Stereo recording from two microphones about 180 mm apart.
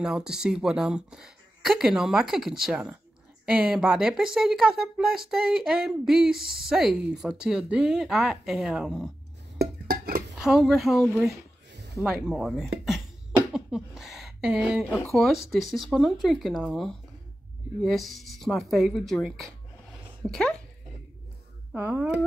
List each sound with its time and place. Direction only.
0.0 s speech: 5° right (ahead or behind)
9.6 s dishes: 55° right (ahead or behind)
10.3 s speech: centre (ahead or behind)
21.7 s speech: 10° right (ahead or behind)